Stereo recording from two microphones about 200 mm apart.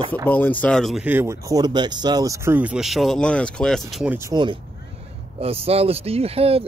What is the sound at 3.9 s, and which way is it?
Speech, 5° right (ahead or behind).